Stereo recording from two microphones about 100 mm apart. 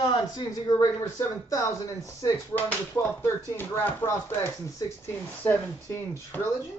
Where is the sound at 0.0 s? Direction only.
50° left (ahead or behind); by 1.8 s 30° left (ahead or behind).